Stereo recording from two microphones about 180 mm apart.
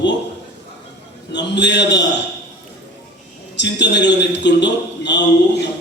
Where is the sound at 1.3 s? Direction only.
75° left (ahead or behind).